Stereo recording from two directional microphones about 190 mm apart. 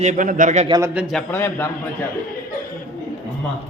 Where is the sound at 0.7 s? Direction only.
15° right (ahead or behind).